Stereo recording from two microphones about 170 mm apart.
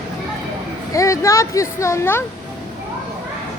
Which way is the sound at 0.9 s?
20° left (ahead or behind).